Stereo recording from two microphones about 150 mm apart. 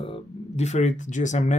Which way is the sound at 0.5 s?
50° left (ahead or behind).